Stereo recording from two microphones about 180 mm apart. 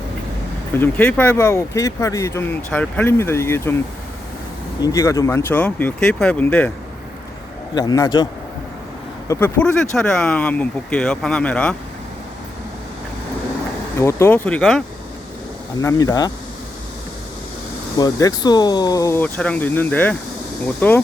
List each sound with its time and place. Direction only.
0.8 s speech: 10° left (ahead or behind)
4.8 s speech: 15° left (ahead or behind)
7.8 s speech: 20° left (ahead or behind); by 11.8 s 5° left (ahead or behind)
14.0 s speech: 15° left (ahead or behind)
15.8 s speech: 15° left (ahead or behind)
17.9 s speech: 20° left (ahead or behind)